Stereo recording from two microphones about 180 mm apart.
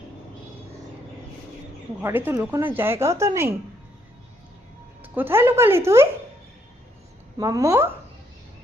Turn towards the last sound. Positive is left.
turn(degrees=-15)  # may be behind; listen again after turning